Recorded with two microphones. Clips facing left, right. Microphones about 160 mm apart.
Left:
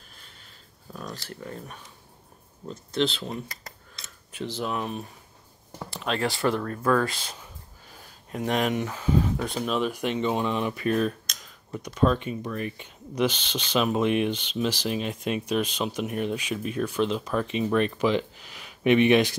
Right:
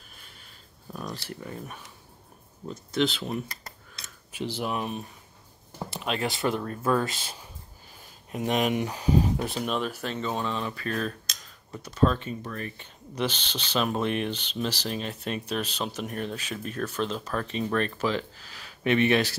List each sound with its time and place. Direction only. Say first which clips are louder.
0.9 s a sound: right 1 dB; 15° right (ahead or behind)
3.0 s speech: even; 5° right (ahead or behind)
4.0 s a sound: right 1 dB; 10° right (ahead or behind)
5.8 s speech: left 2 dB; 20° right (ahead or behind)
8.3 s speech: even; 10° right (ahead or behind)
9.8 s speech: left 5 dB; 15° left (ahead or behind)
11.7 s speech: left 1 dB; 10° left (ahead or behind)